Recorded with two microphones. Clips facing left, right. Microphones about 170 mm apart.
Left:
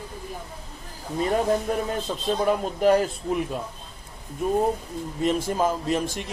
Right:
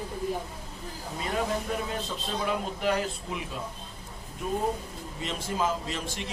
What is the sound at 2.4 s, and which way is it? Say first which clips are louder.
Speech: left 8 dB; 45° left (ahead or behind).